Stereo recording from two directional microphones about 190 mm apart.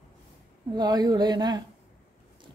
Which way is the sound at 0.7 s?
20° right (ahead or behind).